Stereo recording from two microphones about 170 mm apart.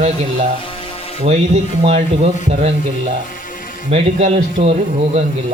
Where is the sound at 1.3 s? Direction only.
35° right (ahead or behind).